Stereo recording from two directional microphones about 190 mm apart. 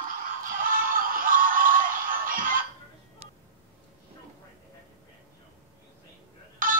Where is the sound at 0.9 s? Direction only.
45° right (ahead or behind).